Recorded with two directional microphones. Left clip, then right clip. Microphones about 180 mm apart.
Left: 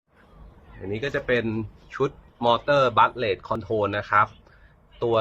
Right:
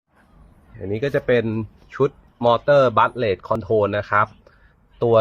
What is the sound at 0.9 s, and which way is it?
Speech, 30° right (ahead or behind).